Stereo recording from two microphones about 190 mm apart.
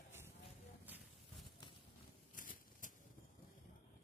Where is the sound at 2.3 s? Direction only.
45° left (ahead or behind).